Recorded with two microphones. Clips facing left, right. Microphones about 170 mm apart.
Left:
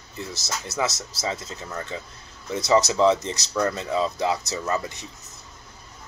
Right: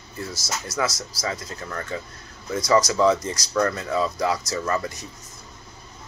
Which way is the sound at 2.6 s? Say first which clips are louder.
Even; 25° left (ahead or behind).